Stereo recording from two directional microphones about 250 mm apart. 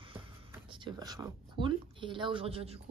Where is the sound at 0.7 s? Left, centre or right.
Centre.